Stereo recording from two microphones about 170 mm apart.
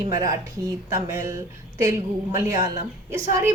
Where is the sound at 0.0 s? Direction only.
20° right (ahead or behind).